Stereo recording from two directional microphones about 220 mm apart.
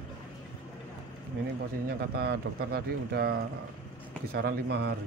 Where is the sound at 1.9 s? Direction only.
45° right (ahead or behind).